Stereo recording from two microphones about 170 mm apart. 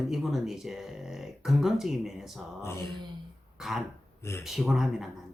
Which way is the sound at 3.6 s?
Centre (ahead or behind).